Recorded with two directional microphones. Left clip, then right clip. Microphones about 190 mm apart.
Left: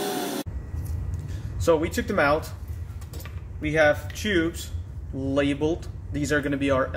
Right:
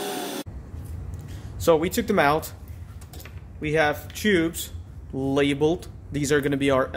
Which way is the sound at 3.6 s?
60° right (ahead or behind).